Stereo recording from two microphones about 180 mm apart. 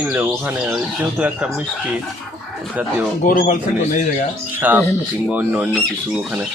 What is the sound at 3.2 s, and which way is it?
Speech, 50° left (ahead or behind).